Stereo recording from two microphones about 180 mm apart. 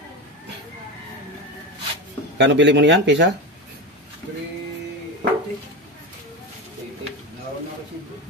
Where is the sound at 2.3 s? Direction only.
80° right.